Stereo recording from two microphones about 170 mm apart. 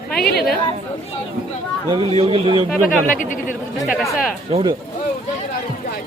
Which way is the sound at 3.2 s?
50° left (ahead or behind).